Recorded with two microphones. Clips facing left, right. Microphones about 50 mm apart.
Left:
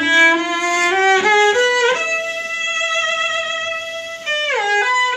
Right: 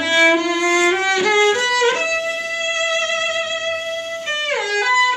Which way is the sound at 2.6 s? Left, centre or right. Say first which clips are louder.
Left 1 dB; left.